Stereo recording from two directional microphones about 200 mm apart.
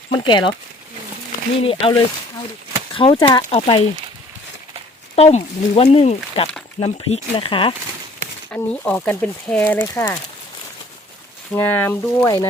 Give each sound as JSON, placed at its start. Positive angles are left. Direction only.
{"t": 0.2, "sound": "speech", "side_deg": 25}
{"t": 1.6, "sound": "speech", "side_deg": 30}
{"t": 5.1, "sound": "speech", "side_deg": 30}
{"t": 8.4, "sound": "speech", "side_deg": 5}
{"t": 11.5, "sound": "speech", "side_deg": 10}